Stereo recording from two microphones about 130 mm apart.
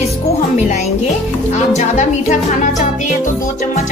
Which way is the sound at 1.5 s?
65° left (ahead or behind).